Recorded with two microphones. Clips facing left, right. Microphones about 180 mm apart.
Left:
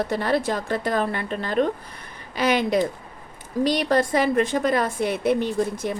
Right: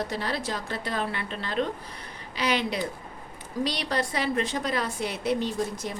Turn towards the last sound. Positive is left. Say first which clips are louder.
# left 5 dB
turn(degrees=55)  # may be behind; listen again after turning